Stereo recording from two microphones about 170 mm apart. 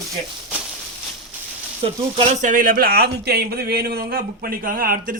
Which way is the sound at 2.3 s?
50° right (ahead or behind).